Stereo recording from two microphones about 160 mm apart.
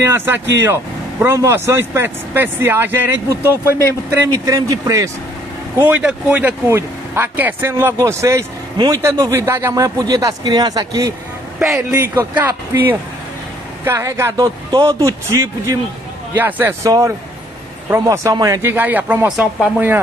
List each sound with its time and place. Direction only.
0.0 s speech: 15° right (ahead or behind)